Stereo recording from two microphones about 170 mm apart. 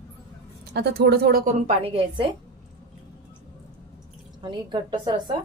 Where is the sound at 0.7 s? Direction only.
75° right (ahead or behind); by 2.3 s 30° right (ahead or behind).